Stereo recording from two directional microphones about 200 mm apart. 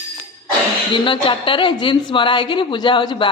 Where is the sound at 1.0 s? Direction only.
25° left (ahead or behind).